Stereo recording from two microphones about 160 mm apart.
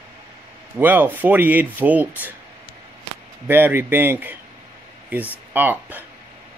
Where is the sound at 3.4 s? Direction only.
15° right (ahead or behind).